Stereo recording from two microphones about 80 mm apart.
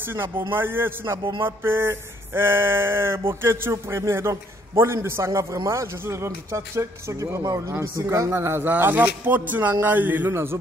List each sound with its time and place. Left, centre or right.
0.0 s a man's voice: right
1.4 s a sound: right
8.3 s speech: right